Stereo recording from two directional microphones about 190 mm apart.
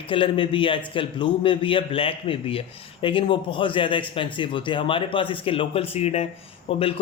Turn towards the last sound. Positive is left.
turn(degrees=30)  # may be behind; listen again after turning